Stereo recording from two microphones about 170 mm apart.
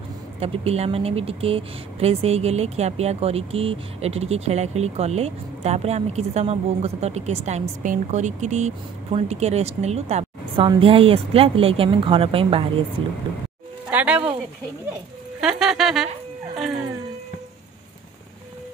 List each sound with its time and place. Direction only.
0.4 s speech: 35° right (ahead or behind)
13.8 s speech: 10° right (ahead or behind)
15.4 s a sound: 5° right (ahead or behind)